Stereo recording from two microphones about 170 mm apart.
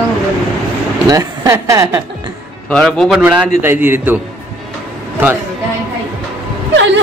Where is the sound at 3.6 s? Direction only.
10° right (ahead or behind).